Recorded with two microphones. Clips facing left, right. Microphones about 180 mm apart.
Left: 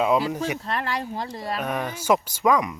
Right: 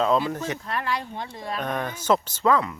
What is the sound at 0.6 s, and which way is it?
Speech, 35° left (ahead or behind).